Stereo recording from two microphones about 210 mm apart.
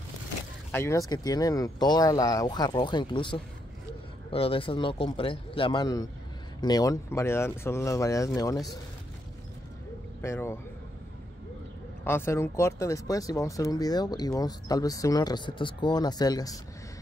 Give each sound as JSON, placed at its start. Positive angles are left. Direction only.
{"t": 0.7, "sound": "a man's voice", "side_deg": 10}
{"t": 10.2, "sound": "speech", "side_deg": 10}
{"t": 12.0, "sound": "speech", "side_deg": 10}